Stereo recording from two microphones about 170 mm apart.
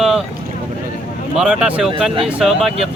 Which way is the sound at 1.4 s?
5° right (ahead or behind).